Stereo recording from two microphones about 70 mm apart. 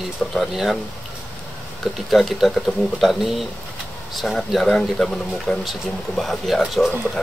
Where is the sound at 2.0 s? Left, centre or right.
Centre.